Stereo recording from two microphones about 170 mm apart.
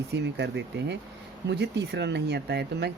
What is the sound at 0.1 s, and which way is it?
Speech, 90° right.